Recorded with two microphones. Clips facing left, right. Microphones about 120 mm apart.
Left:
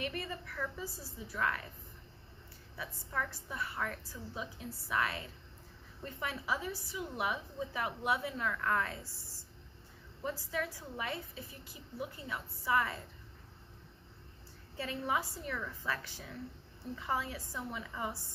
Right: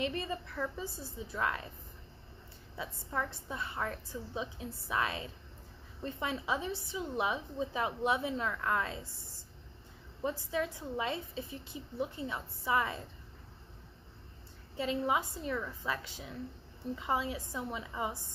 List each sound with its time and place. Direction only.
0.0 s a woman's voice: 25° right (ahead or behind)
2.7 s a woman's voice: 20° right (ahead or behind)
14.8 s a woman's voice: 20° right (ahead or behind)